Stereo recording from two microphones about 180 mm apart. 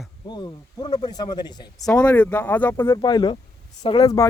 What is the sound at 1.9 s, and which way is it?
Speech, 10° left (ahead or behind).